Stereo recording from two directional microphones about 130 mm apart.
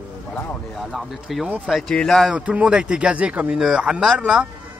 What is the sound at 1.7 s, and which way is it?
Speech, 5° left (ahead or behind).